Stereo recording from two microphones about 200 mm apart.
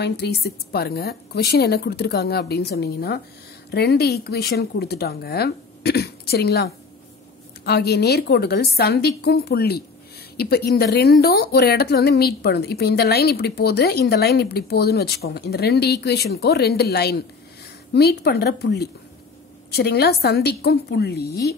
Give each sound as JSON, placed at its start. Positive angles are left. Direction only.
{"t": 0.0, "sound": "speech", "side_deg": 55}